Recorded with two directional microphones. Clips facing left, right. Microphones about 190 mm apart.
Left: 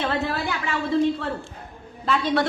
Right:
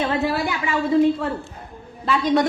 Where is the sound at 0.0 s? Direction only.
15° right (ahead or behind).